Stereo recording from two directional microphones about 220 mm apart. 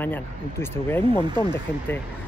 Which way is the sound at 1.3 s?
20° right (ahead or behind).